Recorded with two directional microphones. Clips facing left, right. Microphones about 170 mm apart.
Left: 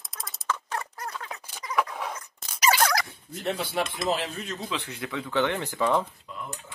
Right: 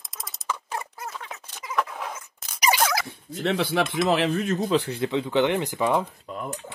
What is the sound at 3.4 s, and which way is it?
Speech, 90° right.